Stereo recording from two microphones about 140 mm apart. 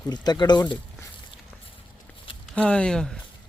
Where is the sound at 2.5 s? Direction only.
10° left (ahead or behind).